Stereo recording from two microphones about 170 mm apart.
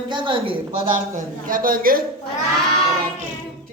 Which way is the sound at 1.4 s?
55° right (ahead or behind).